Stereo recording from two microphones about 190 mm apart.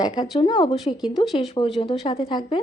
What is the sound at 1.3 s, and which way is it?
Speech, 25° left (ahead or behind).